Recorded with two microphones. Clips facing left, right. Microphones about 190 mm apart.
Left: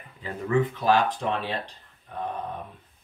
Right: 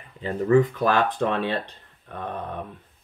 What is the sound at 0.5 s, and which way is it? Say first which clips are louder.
Speech: right 3 dB; 45° right (ahead or behind).